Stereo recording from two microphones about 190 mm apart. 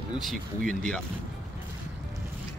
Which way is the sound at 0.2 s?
Centre (ahead or behind).